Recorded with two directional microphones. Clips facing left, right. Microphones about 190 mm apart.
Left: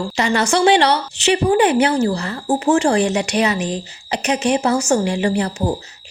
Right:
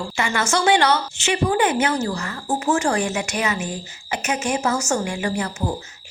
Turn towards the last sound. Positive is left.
turn(degrees=35)  # may be behind; listen again after turning